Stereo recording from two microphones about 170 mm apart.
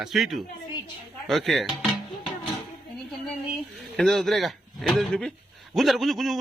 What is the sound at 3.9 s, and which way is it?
Speech, centre (ahead or behind).